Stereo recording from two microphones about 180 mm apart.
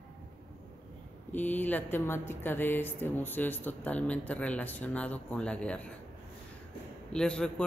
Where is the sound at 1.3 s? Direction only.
10° left (ahead or behind).